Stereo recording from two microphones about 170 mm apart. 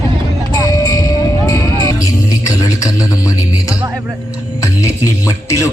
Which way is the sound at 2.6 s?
20° left (ahead or behind).